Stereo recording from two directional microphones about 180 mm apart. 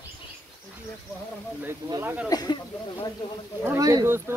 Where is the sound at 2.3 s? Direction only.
20° left (ahead or behind).